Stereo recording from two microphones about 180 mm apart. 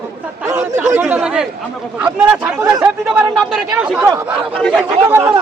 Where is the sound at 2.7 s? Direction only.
10° right (ahead or behind).